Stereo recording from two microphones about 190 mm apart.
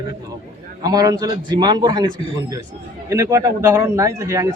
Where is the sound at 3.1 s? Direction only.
15° right (ahead or behind).